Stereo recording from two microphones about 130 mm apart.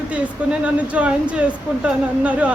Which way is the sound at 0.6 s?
10° right (ahead or behind).